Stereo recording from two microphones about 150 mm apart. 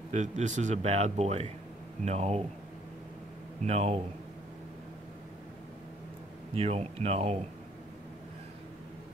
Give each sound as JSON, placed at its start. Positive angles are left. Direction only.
{"t": 0.1, "sound": "speech", "side_deg": -50}
{"t": 3.6, "sound": "speech", "side_deg": -45}
{"t": 6.5, "sound": "speech", "side_deg": -40}